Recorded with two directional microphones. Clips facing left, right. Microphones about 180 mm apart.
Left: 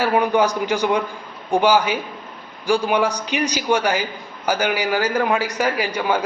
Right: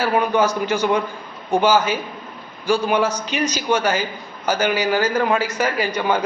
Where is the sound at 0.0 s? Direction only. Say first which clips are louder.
Left 1 dB; 15° left (ahead or behind).